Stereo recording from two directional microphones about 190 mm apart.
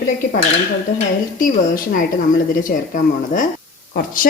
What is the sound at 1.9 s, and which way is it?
Speech, 45° left (ahead or behind).